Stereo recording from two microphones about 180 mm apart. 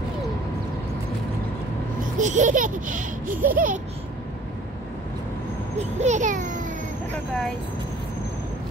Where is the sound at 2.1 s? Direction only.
45° right (ahead or behind).